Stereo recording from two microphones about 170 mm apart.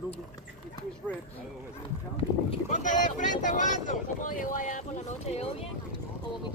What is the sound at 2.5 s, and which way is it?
Speech, 45° left (ahead or behind).